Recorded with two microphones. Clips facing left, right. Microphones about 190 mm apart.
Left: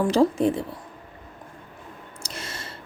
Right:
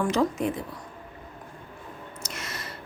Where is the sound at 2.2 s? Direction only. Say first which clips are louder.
Left 2 dB; 30° left (ahead or behind).